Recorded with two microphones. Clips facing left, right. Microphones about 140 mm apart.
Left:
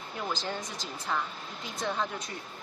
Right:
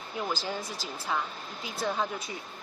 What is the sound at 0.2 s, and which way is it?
Speech, 5° right (ahead or behind).